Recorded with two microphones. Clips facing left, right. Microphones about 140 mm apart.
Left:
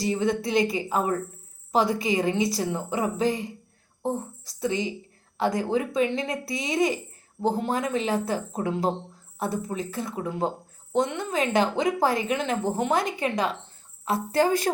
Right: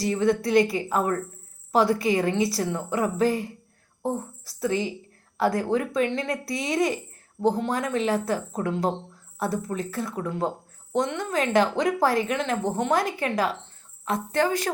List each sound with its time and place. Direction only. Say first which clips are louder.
0.0 s a woman's voice: right 2 dB; centre (ahead or behind)
14.3 s speech: left 2 dB; 40° left (ahead or behind)